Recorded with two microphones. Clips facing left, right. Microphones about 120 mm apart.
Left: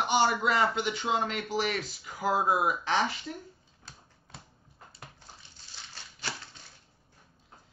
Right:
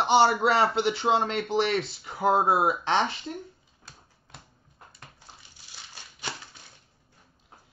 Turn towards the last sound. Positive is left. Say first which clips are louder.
# right 1 dB
turn(degrees=-15)  # may be behind; listen again after turning